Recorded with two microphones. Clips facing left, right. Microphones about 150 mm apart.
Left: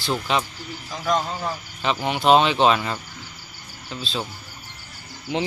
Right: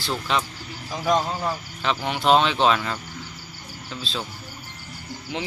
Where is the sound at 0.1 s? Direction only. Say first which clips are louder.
Left 2 dB; 10° left (ahead or behind).